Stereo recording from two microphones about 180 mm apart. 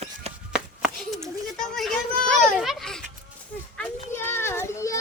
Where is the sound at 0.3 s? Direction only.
35° right (ahead or behind).